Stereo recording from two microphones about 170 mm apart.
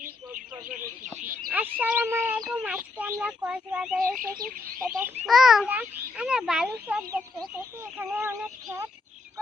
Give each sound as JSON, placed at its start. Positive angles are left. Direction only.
{"t": 0.6, "sound": "speech", "side_deg": -55}
{"t": 1.2, "sound": "speech", "side_deg": -10}
{"t": 4.0, "sound": "speech", "side_deg": -55}
{"t": 5.2, "sound": "a child's voice", "side_deg": 0}